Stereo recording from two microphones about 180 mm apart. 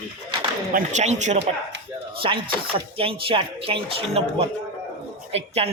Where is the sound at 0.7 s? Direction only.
45° right (ahead or behind).